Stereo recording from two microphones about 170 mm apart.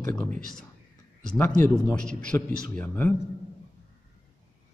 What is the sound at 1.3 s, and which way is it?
Speech, 5° left (ahead or behind).